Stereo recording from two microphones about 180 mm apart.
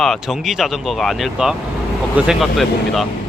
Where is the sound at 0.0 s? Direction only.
Centre (ahead or behind).